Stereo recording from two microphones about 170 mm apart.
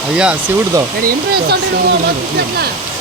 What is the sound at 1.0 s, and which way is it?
Speech, 65° right (ahead or behind).